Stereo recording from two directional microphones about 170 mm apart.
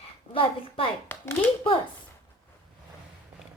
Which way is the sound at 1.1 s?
10° left (ahead or behind).